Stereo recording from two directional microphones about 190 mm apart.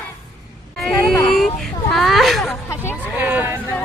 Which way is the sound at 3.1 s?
10° right (ahead or behind).